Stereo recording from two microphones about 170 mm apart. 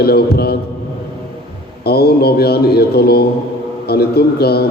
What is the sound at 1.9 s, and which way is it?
A man's voice, 65° left (ahead or behind).